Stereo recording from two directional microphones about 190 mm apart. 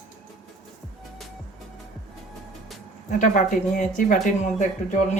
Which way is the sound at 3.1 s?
40° left (ahead or behind).